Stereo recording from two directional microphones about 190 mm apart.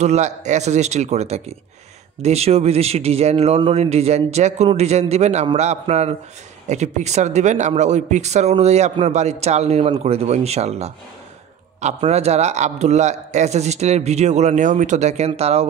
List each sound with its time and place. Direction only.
0.0 s speech: 35° right (ahead or behind)